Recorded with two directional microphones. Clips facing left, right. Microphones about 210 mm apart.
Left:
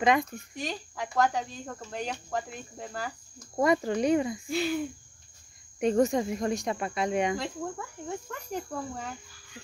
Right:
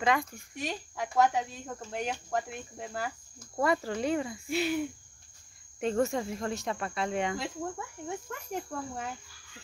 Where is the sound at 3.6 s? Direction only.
20° left (ahead or behind).